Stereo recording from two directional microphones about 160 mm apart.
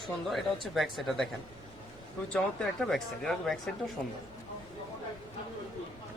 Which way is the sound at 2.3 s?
5° left (ahead or behind).